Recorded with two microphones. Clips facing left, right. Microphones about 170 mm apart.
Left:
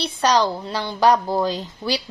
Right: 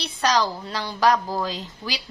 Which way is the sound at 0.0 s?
30° left (ahead or behind).